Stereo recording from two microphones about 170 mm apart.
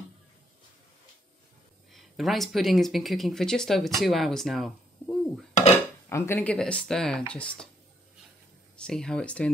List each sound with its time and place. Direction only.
1.9 s speech: centre (ahead or behind)
6.0 s speech: 15° left (ahead or behind)
8.7 s speech: 5° left (ahead or behind)